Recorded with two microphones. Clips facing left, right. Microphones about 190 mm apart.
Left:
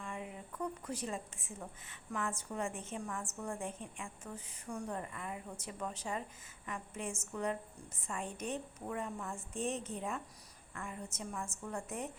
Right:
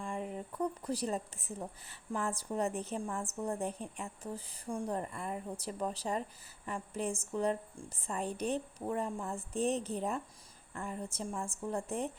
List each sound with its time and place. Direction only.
0.0 s a woman's voice: 35° right (ahead or behind)